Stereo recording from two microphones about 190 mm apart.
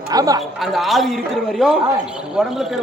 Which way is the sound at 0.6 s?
Centre (ahead or behind).